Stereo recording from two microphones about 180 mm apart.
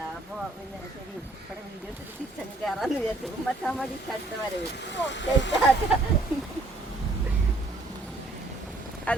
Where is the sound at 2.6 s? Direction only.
Centre (ahead or behind).